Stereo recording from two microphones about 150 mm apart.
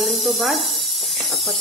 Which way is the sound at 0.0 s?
Centre (ahead or behind).